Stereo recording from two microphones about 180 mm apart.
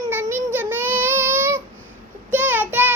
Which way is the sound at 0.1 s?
15° right (ahead or behind).